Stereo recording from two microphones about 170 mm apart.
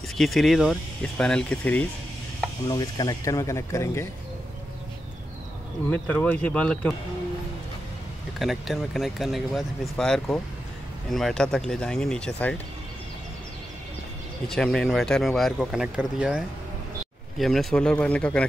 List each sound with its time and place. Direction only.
0.2 s speech: centre (ahead or behind)
2.7 s speech: 20° left (ahead or behind)
5.9 s speech: 10° left (ahead or behind)
8.4 s speech: centre (ahead or behind)
14.5 s speech: 5° left (ahead or behind)